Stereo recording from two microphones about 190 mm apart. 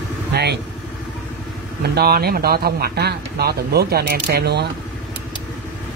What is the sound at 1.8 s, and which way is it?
Speech, 55° right (ahead or behind).